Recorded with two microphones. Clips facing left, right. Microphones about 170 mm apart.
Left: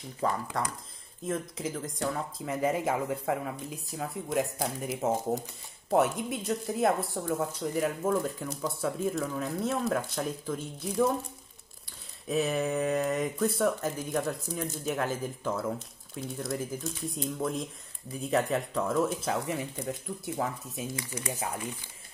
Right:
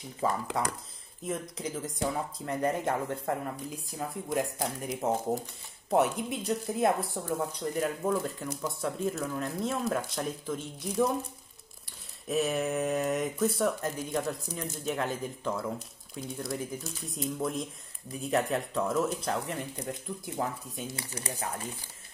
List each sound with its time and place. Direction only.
0.2 s speech: 5° right (ahead or behind)
12.3 s speech: centre (ahead or behind)
20.9 s speech: 30° right (ahead or behind)